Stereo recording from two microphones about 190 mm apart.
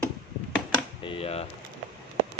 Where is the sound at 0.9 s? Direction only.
30° left (ahead or behind).